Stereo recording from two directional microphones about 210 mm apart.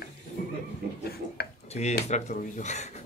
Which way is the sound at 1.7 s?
30° left (ahead or behind).